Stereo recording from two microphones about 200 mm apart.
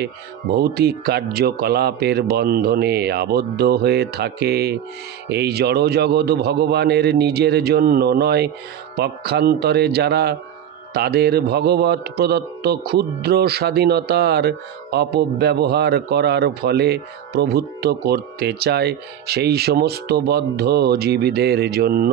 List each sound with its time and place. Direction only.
0.0 s mantra: 50° right (ahead or behind)
5.3 s a man's voice: 55° right (ahead or behind)
8.9 s mantra: 55° right (ahead or behind)